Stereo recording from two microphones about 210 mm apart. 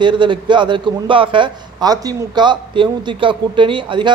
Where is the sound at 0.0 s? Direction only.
20° right (ahead or behind).